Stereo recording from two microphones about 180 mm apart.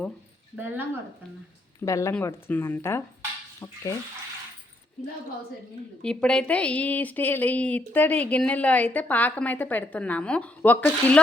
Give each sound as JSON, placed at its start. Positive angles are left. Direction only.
{"t": 0.5, "sound": "speech", "side_deg": -10}
{"t": 1.8, "sound": "a woman's voice", "side_deg": 15}
{"t": 6.0, "sound": "a woman's voice", "side_deg": 5}